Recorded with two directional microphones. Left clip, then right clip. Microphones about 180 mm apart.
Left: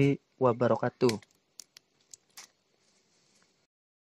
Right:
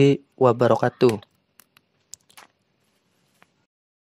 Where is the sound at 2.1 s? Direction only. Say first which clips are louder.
Right 9 dB; 45° right (ahead or behind).